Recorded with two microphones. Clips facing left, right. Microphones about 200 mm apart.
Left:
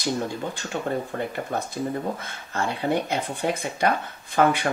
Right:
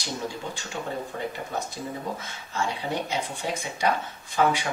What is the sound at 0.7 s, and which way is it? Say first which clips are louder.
Speech: left 5 dB; 55° left (ahead or behind).